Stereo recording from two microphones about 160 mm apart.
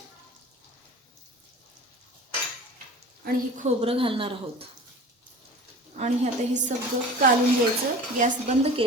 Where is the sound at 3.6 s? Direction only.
35° right (ahead or behind).